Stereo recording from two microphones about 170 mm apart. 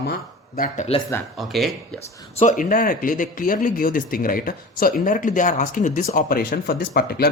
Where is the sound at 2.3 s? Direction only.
50° left (ahead or behind).